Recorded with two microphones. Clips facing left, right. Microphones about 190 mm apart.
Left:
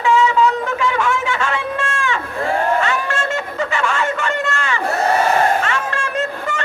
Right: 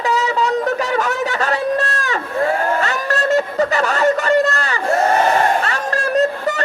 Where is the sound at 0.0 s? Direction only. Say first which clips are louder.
Left 3 dB; 40° right (ahead or behind).